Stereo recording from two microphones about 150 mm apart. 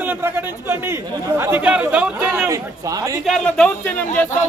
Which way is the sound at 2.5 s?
20° right (ahead or behind).